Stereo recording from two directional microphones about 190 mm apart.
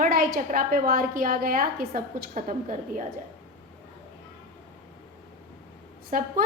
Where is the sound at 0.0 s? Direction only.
50° right (ahead or behind).